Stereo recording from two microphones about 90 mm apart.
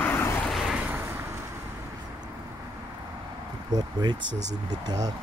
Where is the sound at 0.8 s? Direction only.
20° right (ahead or behind).